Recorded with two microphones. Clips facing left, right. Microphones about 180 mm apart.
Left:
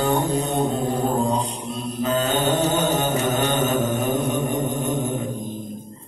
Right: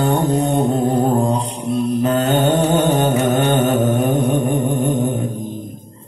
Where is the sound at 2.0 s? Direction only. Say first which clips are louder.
Right 3 dB; 60° right (ahead or behind).